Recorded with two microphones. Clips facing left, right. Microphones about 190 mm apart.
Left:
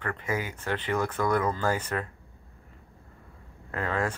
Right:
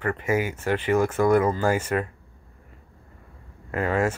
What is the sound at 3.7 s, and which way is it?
Speech, 10° right (ahead or behind).